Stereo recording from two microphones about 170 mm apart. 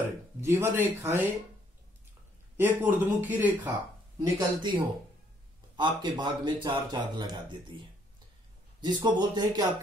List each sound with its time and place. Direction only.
0.4 s speech: 15° right (ahead or behind)
2.5 s speech: 10° right (ahead or behind)
4.2 s speech: 25° right (ahead or behind)
8.8 s speech: 25° right (ahead or behind)